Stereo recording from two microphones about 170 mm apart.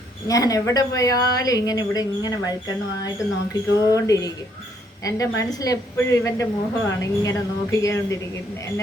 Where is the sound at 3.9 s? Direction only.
20° left (ahead or behind).